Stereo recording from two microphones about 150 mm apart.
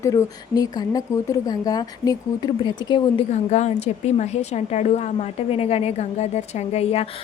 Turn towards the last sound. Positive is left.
turn(degrees=45)  # may be behind; listen again after turning